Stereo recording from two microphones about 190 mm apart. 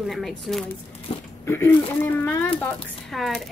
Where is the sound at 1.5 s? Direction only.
10° left (ahead or behind).